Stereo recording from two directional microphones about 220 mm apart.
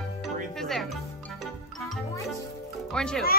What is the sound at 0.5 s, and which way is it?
Music, centre (ahead or behind).